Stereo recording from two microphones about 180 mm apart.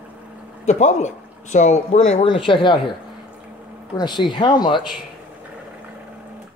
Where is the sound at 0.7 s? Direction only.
40° left (ahead or behind).